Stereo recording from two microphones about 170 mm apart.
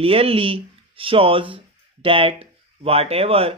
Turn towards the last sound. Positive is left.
turn(degrees=-35)  # may be behind; listen again after turning